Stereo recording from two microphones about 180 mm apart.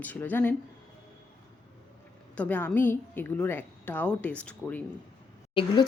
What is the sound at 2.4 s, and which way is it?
A woman's voice, 10° left (ahead or behind).